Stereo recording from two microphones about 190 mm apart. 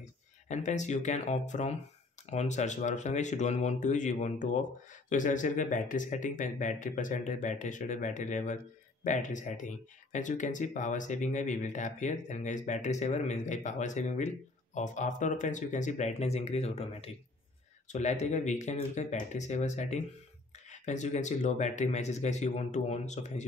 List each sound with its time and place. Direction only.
0.5 s speech: 40° left (ahead or behind)